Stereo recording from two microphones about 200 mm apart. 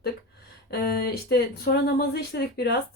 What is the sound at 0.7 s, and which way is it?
Speech, 50° left (ahead or behind).